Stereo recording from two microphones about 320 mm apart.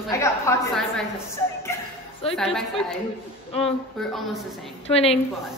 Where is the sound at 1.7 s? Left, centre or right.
Centre.